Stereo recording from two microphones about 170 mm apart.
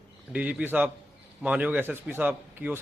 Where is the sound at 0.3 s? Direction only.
10° right (ahead or behind).